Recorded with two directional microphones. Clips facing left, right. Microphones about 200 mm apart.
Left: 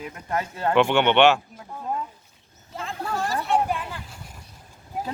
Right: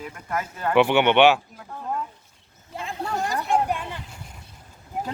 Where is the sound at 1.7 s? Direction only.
10° left (ahead or behind).